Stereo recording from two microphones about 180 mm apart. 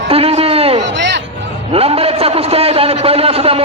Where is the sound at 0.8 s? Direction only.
80° right.